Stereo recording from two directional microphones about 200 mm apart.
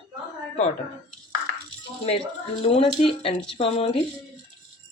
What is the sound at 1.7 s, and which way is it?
Music, 30° left (ahead or behind).